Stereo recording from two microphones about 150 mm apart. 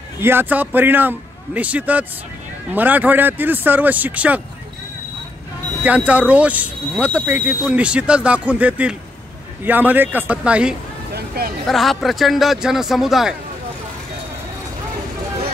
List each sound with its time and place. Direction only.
0.2 s speech: 15° right (ahead or behind)
5.9 s speech: 10° right (ahead or behind)
11.1 s a sound: 90° right
11.6 s speech: centre (ahead or behind)